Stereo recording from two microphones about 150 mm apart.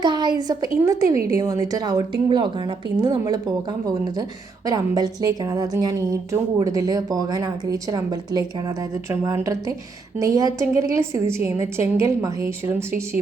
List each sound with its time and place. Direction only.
0.0 s a woman's voice: 30° right (ahead or behind)